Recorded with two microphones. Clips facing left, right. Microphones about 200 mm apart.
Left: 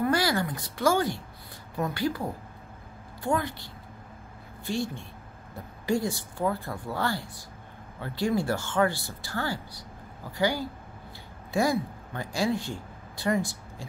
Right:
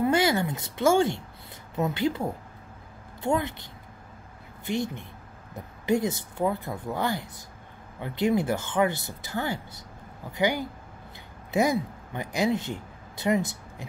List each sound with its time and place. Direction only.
0.0 s speech: 20° right (ahead or behind)